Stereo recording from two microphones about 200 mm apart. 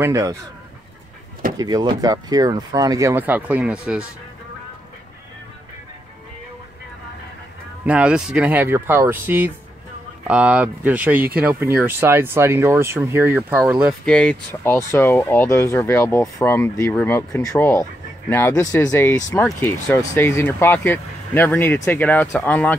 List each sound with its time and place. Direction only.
0.0 s speech: 15° right (ahead or behind)
1.6 s speech: 20° right (ahead or behind); by 4.1 s 5° right (ahead or behind)
7.8 s speech: 5° right (ahead or behind)
14.0 s speech: 5° left (ahead or behind)